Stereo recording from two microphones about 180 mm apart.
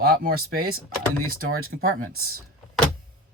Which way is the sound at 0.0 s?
55° right (ahead or behind).